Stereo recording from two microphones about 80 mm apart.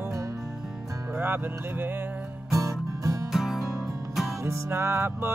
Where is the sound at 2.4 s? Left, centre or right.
Right.